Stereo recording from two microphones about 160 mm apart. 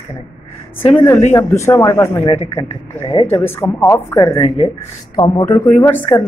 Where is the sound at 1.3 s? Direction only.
15° left (ahead or behind).